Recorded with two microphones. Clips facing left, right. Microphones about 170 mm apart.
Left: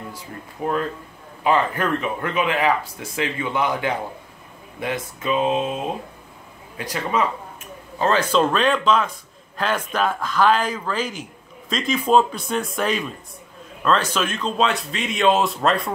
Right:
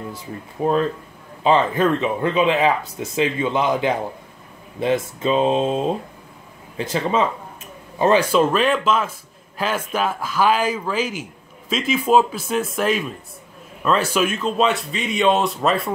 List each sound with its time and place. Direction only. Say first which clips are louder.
0.6 s speech: right 5 dB; 20° right (ahead or behind)
8.0 s speech: right 3 dB; 10° right (ahead or behind)